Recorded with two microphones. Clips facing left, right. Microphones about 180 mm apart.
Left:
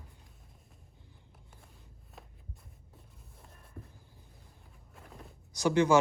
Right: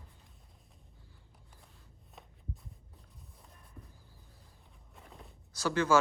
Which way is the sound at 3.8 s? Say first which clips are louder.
Left 5 dB; 60° left (ahead or behind).